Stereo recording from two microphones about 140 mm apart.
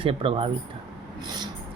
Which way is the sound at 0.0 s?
40° right (ahead or behind).